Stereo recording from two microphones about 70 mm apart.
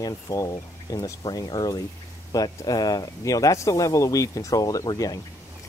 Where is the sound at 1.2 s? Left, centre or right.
Left.